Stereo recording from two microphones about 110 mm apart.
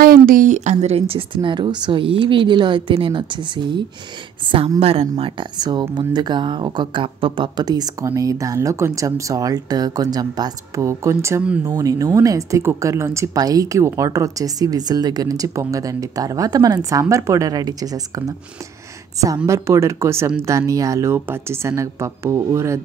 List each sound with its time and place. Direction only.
0.5 s speech: 90° right; by 3.8 s 45° right (ahead or behind)
4.5 s a woman's voice: 60° right (ahead or behind)
5.2 s speech: 45° right (ahead or behind)
19.2 s a woman's voice: 30° right (ahead or behind)